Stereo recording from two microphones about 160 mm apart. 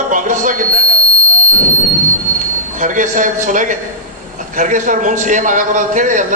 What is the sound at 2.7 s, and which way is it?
A man's voice, 55° right (ahead or behind).